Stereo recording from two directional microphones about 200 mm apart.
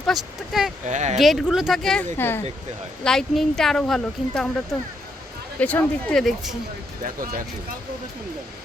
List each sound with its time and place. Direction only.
0.0 s speech: centre (ahead or behind)
0.9 s speech: 35° right (ahead or behind)
1.2 s speech: centre (ahead or behind)
7.0 s speech: 45° right (ahead or behind)